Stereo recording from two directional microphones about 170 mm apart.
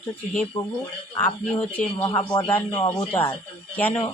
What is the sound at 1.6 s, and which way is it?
Speech, 10° left (ahead or behind).